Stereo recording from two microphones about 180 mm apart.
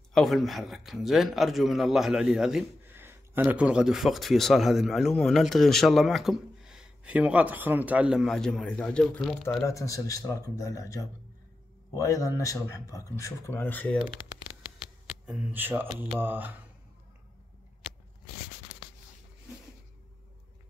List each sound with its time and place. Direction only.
0.1 s a man's voice: centre (ahead or behind)
9.7 s a man's voice: 20° left (ahead or behind)
15.0 s speech: 5° right (ahead or behind)